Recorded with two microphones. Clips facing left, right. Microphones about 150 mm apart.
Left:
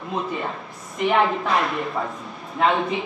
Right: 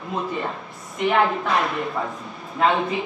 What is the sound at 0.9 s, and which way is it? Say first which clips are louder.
A man's voice: even; centre (ahead or behind).